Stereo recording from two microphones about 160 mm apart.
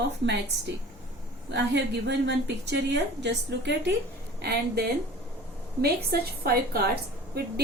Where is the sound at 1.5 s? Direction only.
90° right.